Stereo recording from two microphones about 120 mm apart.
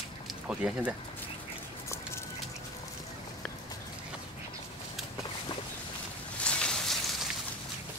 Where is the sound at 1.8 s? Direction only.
25° left (ahead or behind).